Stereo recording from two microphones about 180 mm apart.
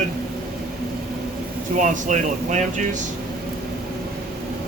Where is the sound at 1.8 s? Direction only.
45° right (ahead or behind).